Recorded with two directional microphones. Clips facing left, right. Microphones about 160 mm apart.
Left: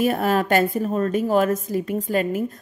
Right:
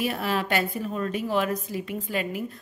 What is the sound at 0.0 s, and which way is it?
A woman's voice, 45° left (ahead or behind).